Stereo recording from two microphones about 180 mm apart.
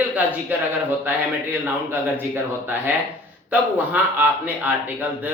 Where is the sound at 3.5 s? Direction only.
10° right (ahead or behind).